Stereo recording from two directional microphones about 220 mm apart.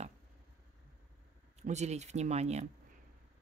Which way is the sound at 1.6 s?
30° right (ahead or behind).